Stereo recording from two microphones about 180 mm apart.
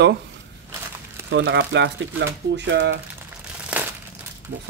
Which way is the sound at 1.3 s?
85° right.